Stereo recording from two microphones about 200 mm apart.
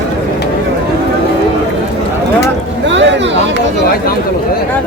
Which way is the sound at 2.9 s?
65° right (ahead or behind).